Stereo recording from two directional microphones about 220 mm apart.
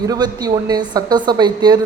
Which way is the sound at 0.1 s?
15° right (ahead or behind).